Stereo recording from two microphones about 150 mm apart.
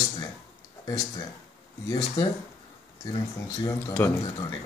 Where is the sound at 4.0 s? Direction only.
15° left (ahead or behind).